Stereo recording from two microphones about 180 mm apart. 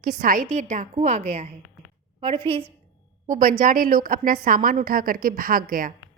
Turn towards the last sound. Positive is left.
turn(degrees=-50)  # may be behind; listen again after turning